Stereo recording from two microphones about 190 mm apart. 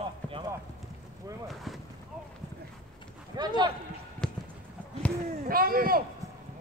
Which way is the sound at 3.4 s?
20° right (ahead or behind).